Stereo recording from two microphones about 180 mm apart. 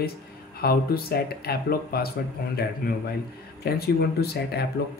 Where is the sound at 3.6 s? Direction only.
60° left (ahead or behind).